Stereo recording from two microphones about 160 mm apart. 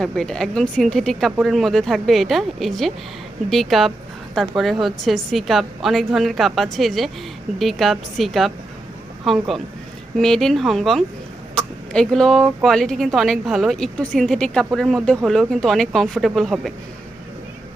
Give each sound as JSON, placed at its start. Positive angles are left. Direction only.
{"t": 0.0, "sound": "speech", "side_deg": 5}